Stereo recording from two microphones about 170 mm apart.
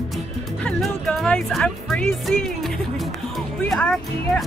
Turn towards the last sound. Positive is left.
turn(degrees=5)  # may be behind; listen again after turning